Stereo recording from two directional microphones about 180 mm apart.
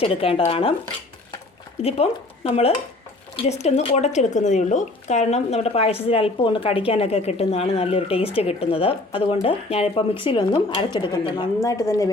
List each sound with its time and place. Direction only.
0.0 s a woman's voice: 30° left (ahead or behind)
1.8 s a woman's voice: 35° left (ahead or behind); by 12.1 s 20° left (ahead or behind)